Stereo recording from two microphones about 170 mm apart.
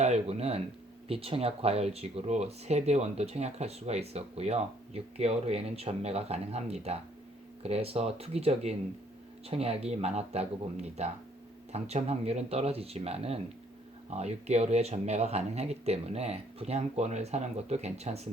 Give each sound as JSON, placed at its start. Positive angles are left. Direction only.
{"t": 0.0, "sound": "speech", "side_deg": -40}